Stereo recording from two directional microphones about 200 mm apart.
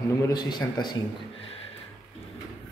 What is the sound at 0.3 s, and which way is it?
Speech, 20° left (ahead or behind).